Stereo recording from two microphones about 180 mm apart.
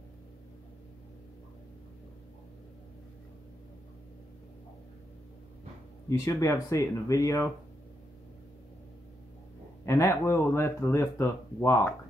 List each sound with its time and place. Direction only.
6.0 s speech: 15° left (ahead or behind)
9.8 s speech: 15° left (ahead or behind)